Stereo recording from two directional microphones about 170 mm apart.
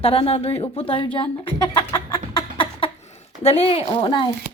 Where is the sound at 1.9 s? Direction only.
25° left (ahead or behind).